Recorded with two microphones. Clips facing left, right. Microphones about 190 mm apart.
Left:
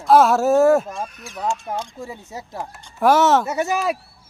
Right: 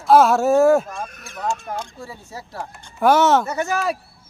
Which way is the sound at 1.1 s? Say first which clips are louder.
Left 3 dB; 50° right (ahead or behind).